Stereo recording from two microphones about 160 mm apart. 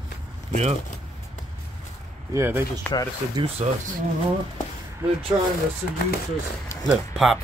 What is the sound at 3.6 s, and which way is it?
Speech, 40° right (ahead or behind).